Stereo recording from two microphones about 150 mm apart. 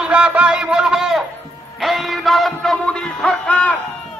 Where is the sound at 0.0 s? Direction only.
5° right (ahead or behind).